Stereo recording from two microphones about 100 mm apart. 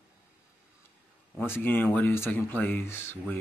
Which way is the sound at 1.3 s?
20° left (ahead or behind).